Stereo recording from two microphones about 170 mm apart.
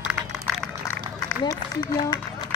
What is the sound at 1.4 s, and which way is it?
Run, 25° left (ahead or behind).